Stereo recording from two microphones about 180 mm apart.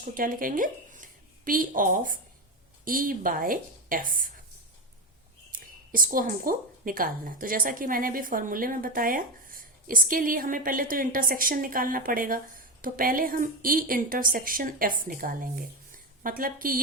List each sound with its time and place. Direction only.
0.0 s a woman's voice: 50° right (ahead or behind)
5.5 s a woman's voice: 50° right (ahead or behind)